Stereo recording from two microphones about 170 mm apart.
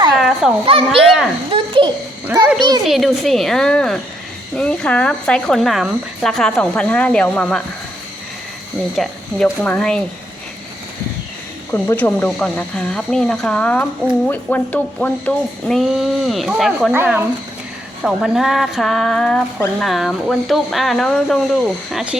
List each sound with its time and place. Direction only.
0.1 s fowl: centre (ahead or behind)
0.6 s a child's voice: 35° right (ahead or behind)
0.9 s speech: centre (ahead or behind)
1.5 s babbling: 30° right (ahead or behind)
2.8 s speech: centre (ahead or behind)
9.0 s speech: 5° left (ahead or behind)
11.7 s speech: 10° left (ahead or behind)
16.9 s speech: 15° right (ahead or behind)
18.0 s speech: centre (ahead or behind)